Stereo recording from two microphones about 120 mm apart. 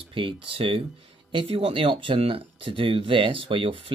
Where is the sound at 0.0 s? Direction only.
45° right (ahead or behind).